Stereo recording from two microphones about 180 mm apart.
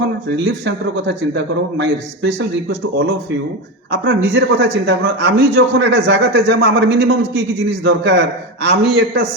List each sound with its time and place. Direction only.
0.0 s a man's voice: 70° right (ahead or behind)